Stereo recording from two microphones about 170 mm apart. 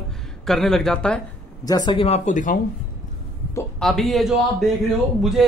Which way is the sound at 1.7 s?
25° left (ahead or behind).